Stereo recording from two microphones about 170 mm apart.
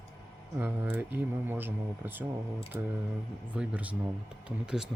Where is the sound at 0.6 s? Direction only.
10° right (ahead or behind).